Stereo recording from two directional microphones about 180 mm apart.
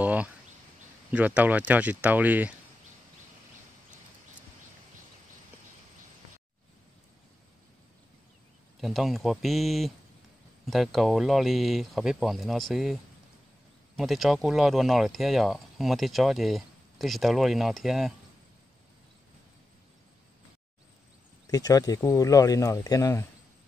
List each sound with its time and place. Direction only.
0.0 s a sound: 10° right (ahead or behind)
1.1 s speech: 10° right (ahead or behind)
8.8 s speech: centre (ahead or behind)
21.5 s speech: 20° left (ahead or behind)